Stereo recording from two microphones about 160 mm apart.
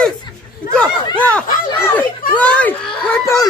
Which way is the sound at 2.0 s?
10° left (ahead or behind).